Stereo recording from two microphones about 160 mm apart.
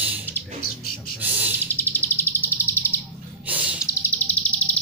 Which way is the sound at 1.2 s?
10° right (ahead or behind).